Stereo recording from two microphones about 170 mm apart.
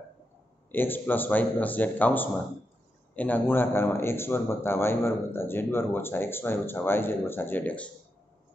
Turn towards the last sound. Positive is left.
turn(degrees=10)  # may be behind; listen again after turning